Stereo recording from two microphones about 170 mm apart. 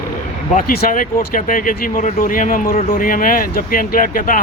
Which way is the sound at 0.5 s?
60° left (ahead or behind).